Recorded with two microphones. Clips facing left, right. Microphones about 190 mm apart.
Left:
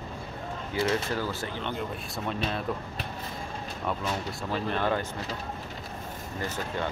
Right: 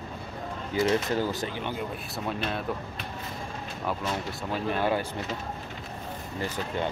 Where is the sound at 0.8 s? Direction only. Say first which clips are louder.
Right 3 dB; 20° right (ahead or behind).